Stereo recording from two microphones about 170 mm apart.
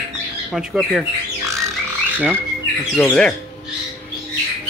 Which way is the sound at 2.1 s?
10° right (ahead or behind).